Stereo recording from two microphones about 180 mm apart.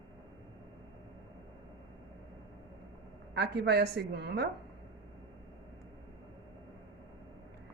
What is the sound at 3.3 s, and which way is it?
A woman's voice, 65° right (ahead or behind).